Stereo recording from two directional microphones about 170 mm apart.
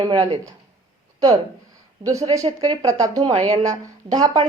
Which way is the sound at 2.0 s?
20° right (ahead or behind).